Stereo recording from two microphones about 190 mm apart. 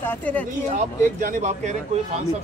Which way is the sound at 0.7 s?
45° right (ahead or behind).